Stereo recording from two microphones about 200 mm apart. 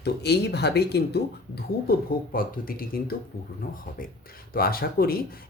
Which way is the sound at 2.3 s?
45° left (ahead or behind).